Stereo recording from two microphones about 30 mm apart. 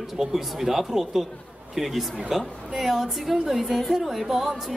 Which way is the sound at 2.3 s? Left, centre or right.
Centre.